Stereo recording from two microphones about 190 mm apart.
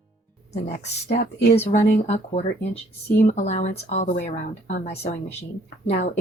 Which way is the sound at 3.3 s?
35° left (ahead or behind).